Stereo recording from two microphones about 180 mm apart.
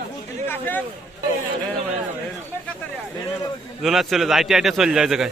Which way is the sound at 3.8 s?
Centre (ahead or behind).